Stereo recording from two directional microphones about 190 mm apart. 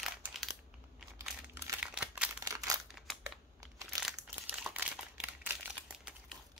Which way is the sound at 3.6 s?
15° right (ahead or behind).